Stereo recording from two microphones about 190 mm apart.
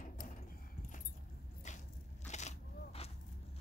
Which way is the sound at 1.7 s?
40° left (ahead or behind).